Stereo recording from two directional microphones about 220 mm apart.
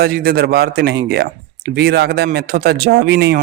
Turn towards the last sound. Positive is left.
turn(degrees=-50)  # may be behind; listen again after turning